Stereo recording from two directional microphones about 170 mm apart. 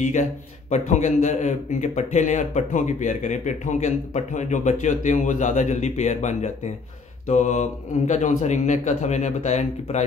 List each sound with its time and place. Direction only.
0.0 s a man's voice: 45° left (ahead or behind)